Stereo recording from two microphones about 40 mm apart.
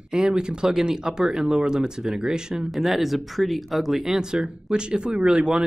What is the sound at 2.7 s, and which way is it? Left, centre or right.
Speech, centre.